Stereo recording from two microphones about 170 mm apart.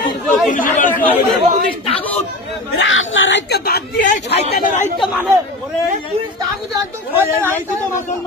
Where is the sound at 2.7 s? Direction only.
90° left.